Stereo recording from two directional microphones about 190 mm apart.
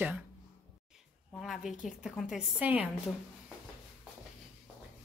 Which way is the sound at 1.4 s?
Centre (ahead or behind).